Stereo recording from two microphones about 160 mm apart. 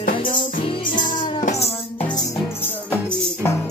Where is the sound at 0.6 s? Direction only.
30° left (ahead or behind).